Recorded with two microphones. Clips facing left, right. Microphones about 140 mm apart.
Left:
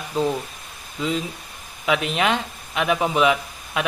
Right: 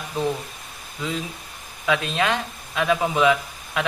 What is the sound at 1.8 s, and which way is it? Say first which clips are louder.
Speech: left 1 dB; 20° left (ahead or behind).